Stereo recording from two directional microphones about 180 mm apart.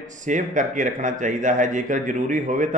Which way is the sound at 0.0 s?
45° right (ahead or behind).